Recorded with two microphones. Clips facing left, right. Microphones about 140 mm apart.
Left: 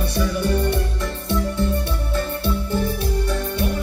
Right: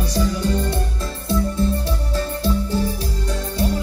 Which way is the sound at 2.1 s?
60° left (ahead or behind).